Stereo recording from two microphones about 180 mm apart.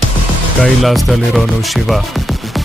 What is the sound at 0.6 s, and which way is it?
Music, centre (ahead or behind).